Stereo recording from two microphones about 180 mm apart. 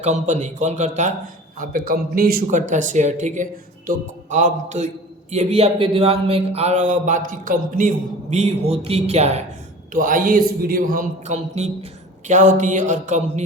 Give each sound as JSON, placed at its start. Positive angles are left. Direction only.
{"t": 0.0, "sound": "a man's voice", "side_deg": -40}
{"t": 1.5, "sound": "a man's voice", "side_deg": -55}
{"t": 9.9, "sound": "speech", "side_deg": -50}